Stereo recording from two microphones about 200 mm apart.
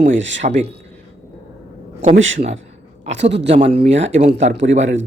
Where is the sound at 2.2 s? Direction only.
70° right (ahead or behind).